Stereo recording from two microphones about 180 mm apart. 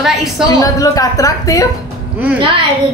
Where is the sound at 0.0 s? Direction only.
Centre (ahead or behind).